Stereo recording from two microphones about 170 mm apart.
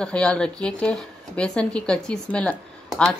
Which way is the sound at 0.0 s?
5° left (ahead or behind).